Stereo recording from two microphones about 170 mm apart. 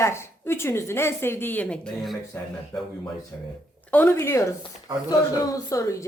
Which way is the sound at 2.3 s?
15° left (ahead or behind).